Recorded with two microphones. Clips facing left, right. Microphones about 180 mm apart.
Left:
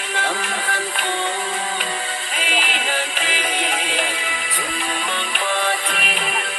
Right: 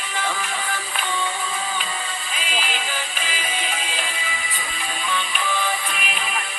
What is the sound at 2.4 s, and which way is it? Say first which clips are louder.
Music: left 3 dB; 70° left (ahead or behind).